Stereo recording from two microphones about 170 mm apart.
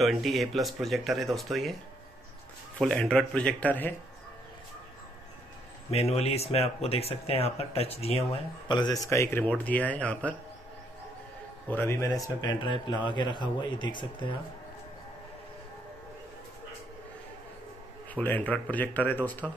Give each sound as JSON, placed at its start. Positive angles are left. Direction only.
{"t": 0.0, "sound": "speech", "side_deg": 0}
{"t": 2.8, "sound": "speech", "side_deg": 5}
{"t": 5.9, "sound": "speech", "side_deg": 40}
{"t": 11.7, "sound": "speech", "side_deg": 15}
{"t": 18.1, "sound": "speech", "side_deg": 10}